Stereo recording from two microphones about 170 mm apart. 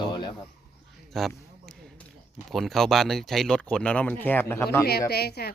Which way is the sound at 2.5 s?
Centre (ahead or behind).